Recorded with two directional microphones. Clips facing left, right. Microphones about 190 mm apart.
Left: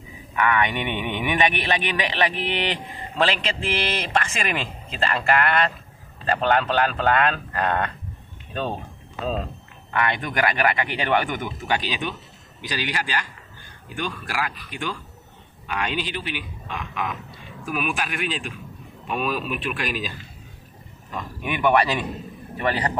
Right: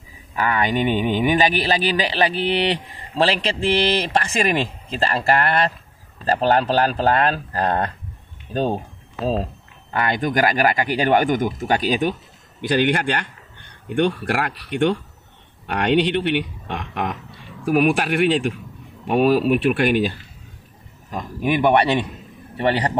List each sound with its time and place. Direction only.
0.4 s speech: 35° right (ahead or behind)
9.2 s speech: 35° right (ahead or behind)
12.6 s speech: 55° right (ahead or behind)
21.1 s speech: 40° right (ahead or behind)